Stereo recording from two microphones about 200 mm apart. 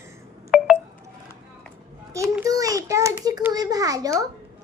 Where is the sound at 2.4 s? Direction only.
15° right (ahead or behind).